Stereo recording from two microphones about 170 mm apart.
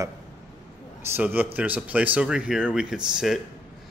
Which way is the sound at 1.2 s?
10° right (ahead or behind).